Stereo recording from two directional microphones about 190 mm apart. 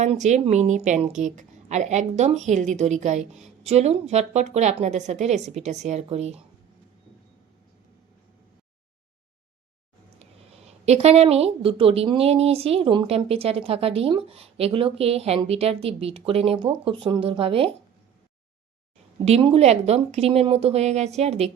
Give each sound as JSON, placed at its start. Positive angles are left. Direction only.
{"t": 0.0, "sound": "a woman's voice", "side_deg": -40}
{"t": 10.7, "sound": "a woman's voice", "side_deg": -35}
{"t": 19.2, "sound": "a woman's voice", "side_deg": -30}